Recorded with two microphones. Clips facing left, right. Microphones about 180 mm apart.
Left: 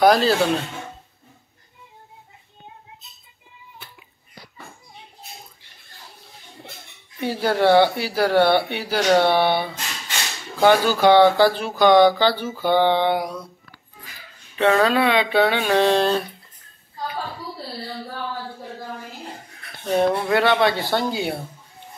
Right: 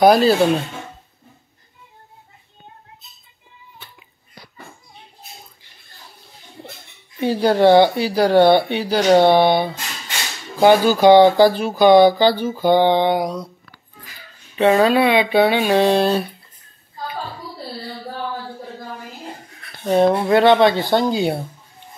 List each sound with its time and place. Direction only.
0.0 s speech: 15° right (ahead or behind)
7.2 s speech: 15° right (ahead or behind)
10.6 s speech: 15° right (ahead or behind)
14.6 s speech: 15° right (ahead or behind)
20.0 s speech: 25° right (ahead or behind)